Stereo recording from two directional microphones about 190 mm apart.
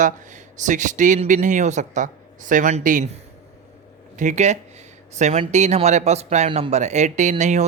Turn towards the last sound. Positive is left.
turn(degrees=-40)  # may be behind; listen again after turning